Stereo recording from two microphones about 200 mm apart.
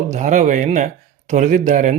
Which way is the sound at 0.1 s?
40° right (ahead or behind).